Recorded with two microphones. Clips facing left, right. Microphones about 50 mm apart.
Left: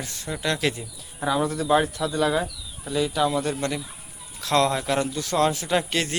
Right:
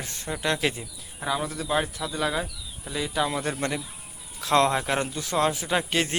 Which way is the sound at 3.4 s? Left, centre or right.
Right.